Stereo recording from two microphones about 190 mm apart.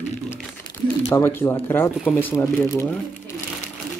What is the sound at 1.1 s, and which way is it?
Speech, 10° left (ahead or behind).